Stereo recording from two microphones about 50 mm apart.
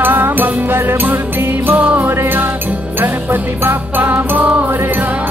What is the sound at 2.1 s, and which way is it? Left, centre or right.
Music, right.